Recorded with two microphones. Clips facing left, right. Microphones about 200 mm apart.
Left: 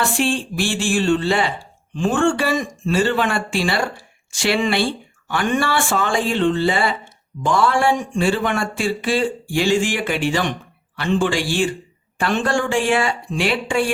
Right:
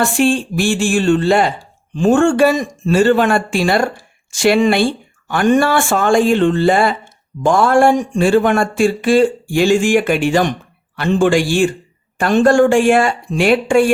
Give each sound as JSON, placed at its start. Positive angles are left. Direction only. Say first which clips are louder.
{"t": 0.0, "sound": "speech", "louder": "right 6 dB", "side_deg": -45}